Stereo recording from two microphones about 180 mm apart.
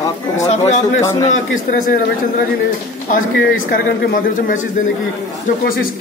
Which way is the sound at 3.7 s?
50° left (ahead or behind).